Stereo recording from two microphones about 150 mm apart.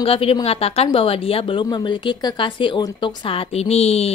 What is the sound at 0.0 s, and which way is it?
A woman's voice, 40° left (ahead or behind).